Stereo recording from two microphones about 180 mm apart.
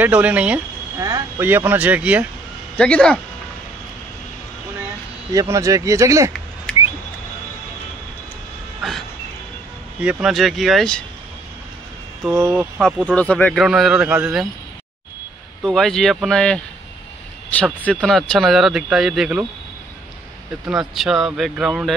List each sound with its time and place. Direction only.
0.0 s speech: 10° right (ahead or behind)
2.8 s a man's voice: 5° left (ahead or behind)
5.3 s speech: 20° right (ahead or behind)
6.7 s a sound: 5° left (ahead or behind)
9.9 s a man's voice: 5° right (ahead or behind)
12.3 s speech: 15° right (ahead or behind)
12.8 s a man's voice: 5° left (ahead or behind)
15.6 s a man's voice: centre (ahead or behind)
20.6 s a man's voice: centre (ahead or behind)